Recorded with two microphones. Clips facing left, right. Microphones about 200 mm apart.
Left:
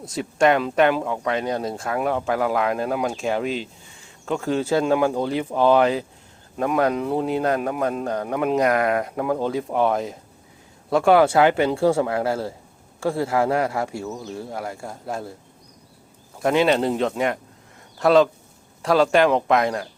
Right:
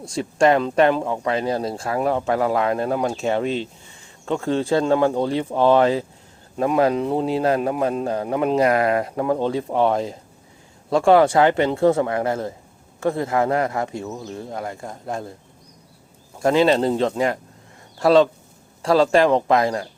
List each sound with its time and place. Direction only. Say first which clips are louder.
0.1 s speech: right 2 dB; centre (ahead or behind)
16.4 s speech: right 2 dB; centre (ahead or behind)